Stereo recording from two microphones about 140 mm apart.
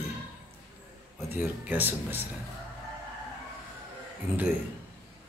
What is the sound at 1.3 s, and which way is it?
Speech, 15° right (ahead or behind).